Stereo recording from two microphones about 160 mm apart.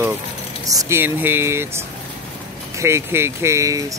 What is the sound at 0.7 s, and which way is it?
Speech, 20° right (ahead or behind).